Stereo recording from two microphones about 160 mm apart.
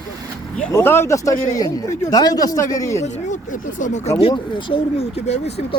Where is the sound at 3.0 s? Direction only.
50° left (ahead or behind).